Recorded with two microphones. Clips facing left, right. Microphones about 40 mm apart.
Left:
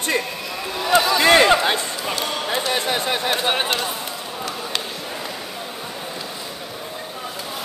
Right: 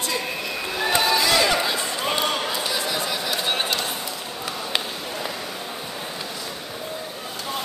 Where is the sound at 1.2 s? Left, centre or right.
Left.